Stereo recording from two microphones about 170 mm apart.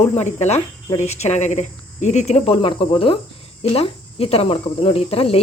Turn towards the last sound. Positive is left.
turn(degrees=35)  # may be behind; listen again after turning